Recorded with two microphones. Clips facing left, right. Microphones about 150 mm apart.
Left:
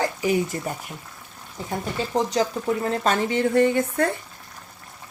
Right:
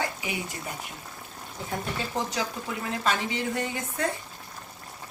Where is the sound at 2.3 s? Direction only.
40° left (ahead or behind); by 4.1 s 55° left (ahead or behind).